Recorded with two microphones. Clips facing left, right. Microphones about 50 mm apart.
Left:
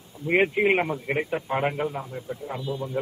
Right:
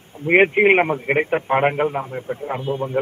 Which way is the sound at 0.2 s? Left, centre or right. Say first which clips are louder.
Right 7 dB; right.